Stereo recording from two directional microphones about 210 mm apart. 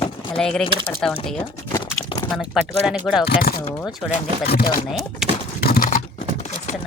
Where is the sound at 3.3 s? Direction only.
45° left (ahead or behind).